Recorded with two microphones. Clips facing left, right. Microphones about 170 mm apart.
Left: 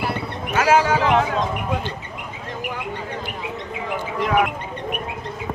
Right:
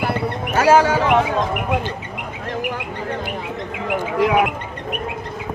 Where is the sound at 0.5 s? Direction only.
35° right (ahead or behind).